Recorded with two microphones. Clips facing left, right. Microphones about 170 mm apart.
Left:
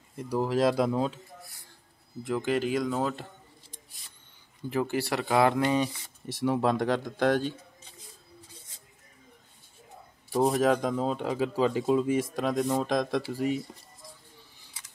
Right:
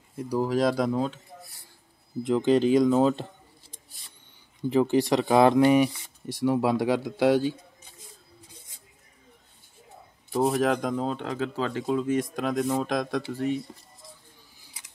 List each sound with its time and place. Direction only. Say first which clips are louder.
0.4 s speech: right 1 dB; centre (ahead or behind)
2.2 s speech: right 7 dB; 20° right (ahead or behind)
4.6 s speech: right 7 dB; 20° right (ahead or behind)
6.2 s speech: right 2 dB; centre (ahead or behind)
10.4 s speech: even; centre (ahead or behind)